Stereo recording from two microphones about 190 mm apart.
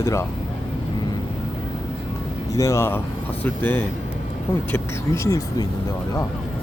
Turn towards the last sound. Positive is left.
turn(degrees=15)  # may be behind; listen again after turning